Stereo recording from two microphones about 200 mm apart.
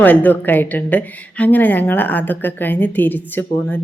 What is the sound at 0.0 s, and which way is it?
A woman's voice, 10° left (ahead or behind).